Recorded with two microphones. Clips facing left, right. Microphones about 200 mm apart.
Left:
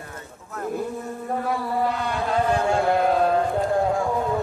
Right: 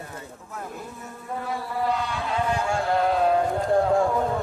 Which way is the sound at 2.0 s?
50° left (ahead or behind).